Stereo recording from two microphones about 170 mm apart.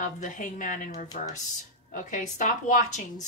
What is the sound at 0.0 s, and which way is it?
A woman's voice, 45° left (ahead or behind).